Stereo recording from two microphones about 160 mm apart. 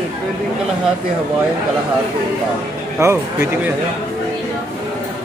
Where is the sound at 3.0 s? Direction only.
15° right (ahead or behind).